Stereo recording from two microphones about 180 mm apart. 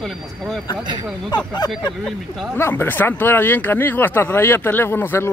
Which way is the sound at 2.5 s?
10° left (ahead or behind).